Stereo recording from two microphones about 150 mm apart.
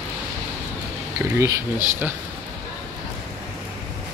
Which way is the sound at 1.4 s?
15° right (ahead or behind).